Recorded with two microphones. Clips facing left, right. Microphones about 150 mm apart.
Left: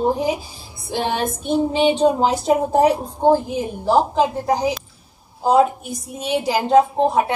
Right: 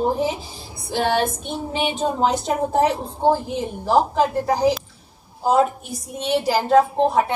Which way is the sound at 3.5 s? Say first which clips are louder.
Left 1 dB; 10° left (ahead or behind).